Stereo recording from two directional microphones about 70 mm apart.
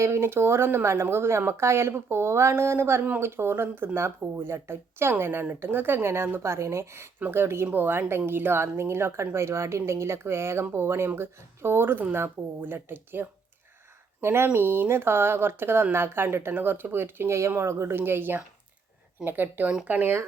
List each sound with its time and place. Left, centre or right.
0.0 s a woman's voice: right